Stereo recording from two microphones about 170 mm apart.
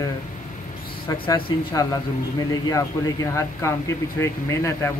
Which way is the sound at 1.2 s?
25° left (ahead or behind).